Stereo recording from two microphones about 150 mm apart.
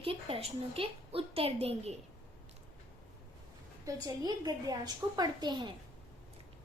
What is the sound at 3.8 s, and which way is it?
A woman's voice, 25° right (ahead or behind).